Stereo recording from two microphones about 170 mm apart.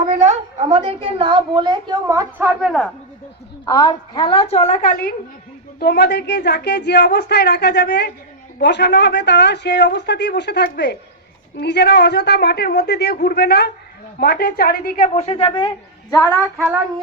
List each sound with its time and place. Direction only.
0.3 s a woman's voice: 35° right (ahead or behind); by 2.5 s 20° right (ahead or behind)
2.5 s speech: centre (ahead or behind)
3.7 s a woman's voice: 25° left (ahead or behind); by 5.1 s 55° left (ahead or behind)
5.8 s speech: 70° left (ahead or behind)
8.6 s a woman's voice: 90° left; by 16.4 s 15° left (ahead or behind)